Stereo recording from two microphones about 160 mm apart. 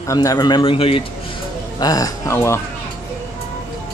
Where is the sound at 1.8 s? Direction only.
20° left (ahead or behind).